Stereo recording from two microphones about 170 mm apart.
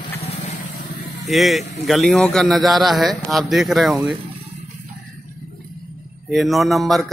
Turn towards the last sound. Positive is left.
turn(degrees=0)  # may be behind; listen again after turning